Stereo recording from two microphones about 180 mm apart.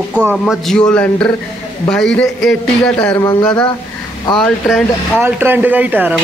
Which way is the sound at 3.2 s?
20° left (ahead or behind).